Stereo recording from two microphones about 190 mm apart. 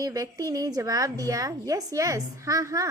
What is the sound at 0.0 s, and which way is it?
Speech, 20° right (ahead or behind).